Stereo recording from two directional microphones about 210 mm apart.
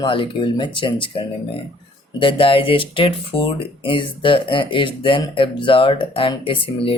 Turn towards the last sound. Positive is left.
turn(degrees=25)  # may be behind; listen again after turning